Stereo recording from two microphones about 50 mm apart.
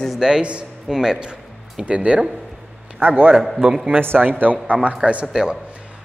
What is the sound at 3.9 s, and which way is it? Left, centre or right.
Speech, right.